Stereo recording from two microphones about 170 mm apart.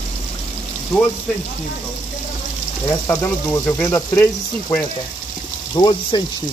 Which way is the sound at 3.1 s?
15° left (ahead or behind).